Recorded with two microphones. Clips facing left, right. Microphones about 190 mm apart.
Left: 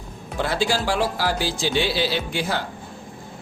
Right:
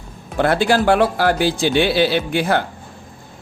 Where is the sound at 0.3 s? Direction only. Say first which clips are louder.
Right 7 dB; 55° right (ahead or behind).